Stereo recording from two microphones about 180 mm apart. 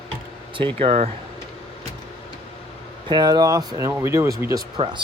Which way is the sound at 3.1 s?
25° right (ahead or behind).